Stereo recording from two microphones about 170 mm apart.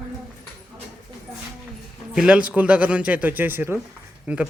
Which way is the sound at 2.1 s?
5° right (ahead or behind).